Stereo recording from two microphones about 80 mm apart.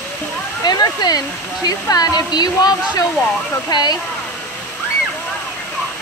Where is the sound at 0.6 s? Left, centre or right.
Left.